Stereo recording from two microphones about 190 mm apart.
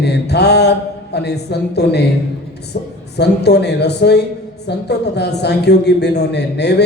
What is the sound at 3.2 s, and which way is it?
A woman's voice, 60° left (ahead or behind).